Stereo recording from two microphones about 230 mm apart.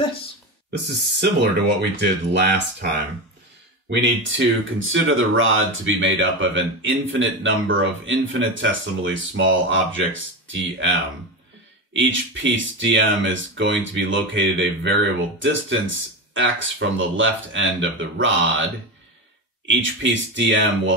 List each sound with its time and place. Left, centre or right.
0.7 s speech: right